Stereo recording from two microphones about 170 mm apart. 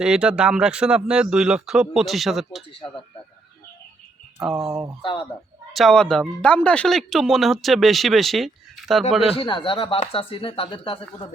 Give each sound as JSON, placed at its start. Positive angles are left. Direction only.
{"t": 0.0, "sound": "speech", "side_deg": -5}
{"t": 4.4, "sound": "speech", "side_deg": -5}
{"t": 5.7, "sound": "speech", "side_deg": 0}
{"t": 9.4, "sound": "speech", "side_deg": 30}